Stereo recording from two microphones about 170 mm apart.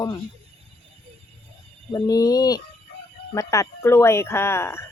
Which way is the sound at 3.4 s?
20° left (ahead or behind).